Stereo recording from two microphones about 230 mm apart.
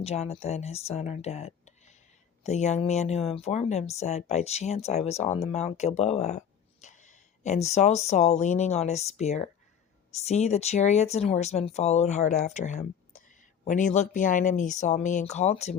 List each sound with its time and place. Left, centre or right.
0.0 s speech: left